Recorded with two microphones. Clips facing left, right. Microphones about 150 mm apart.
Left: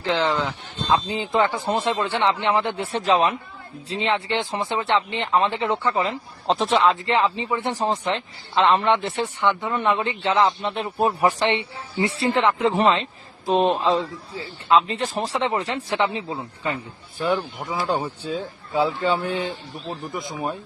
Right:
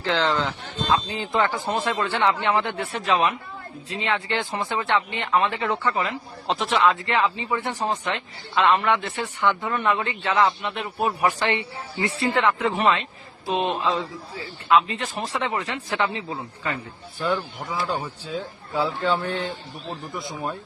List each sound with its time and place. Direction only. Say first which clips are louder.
0.0 s a man's voice: left 1 dB; 20° left (ahead or behind)
9.5 s a man's voice: even; 20° left (ahead or behind)
17.8 s a man's voice: left 6 dB; 35° left (ahead or behind)
18.3 s a man's voice: left 3 dB; 20° left (ahead or behind)